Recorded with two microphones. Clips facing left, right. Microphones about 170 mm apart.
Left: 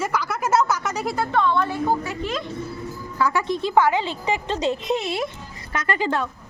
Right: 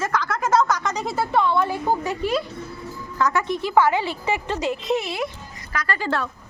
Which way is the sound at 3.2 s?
10° left (ahead or behind).